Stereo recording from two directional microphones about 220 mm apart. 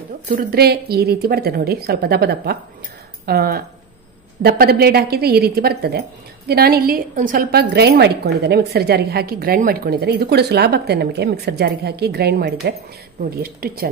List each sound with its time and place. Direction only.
0.3 s a woman's voice: 45° right (ahead or behind)